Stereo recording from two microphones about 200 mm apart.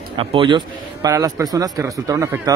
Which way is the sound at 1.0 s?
15° right (ahead or behind).